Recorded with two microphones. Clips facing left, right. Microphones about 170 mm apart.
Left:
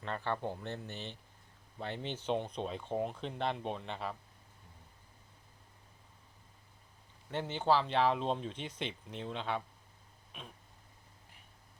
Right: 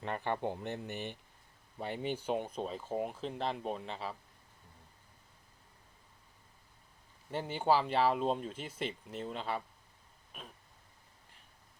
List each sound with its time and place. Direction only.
0.0 s speech: 15° right (ahead or behind)
7.3 s speech: 5° right (ahead or behind)